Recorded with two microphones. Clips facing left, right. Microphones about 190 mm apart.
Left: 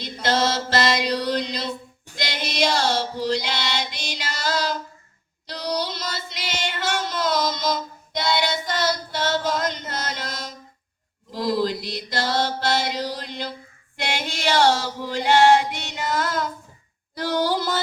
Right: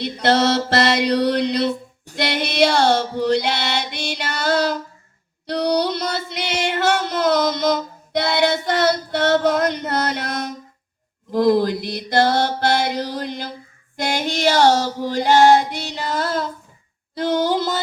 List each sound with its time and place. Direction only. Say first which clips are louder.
0.0 s music: right 5 dB; 65° right (ahead or behind)
2.1 s female singing: right 7 dB; 65° right (ahead or behind)
5.5 s a sound: right 8 dB; 60° right (ahead or behind)
11.3 s mantra: right 7 dB; 55° right (ahead or behind)
13.9 s female singing: right 6 dB; 40° right (ahead or behind)
17.2 s a sound: right 4 dB; 20° right (ahead or behind)